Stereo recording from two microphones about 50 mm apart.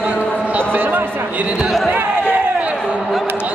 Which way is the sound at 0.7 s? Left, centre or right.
Right.